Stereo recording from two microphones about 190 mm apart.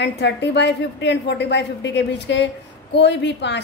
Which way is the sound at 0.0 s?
65° left (ahead or behind).